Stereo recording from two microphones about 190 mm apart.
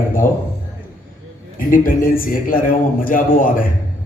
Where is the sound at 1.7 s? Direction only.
45° left (ahead or behind).